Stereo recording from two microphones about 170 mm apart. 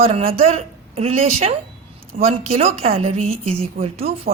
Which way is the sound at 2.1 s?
50° right (ahead or behind).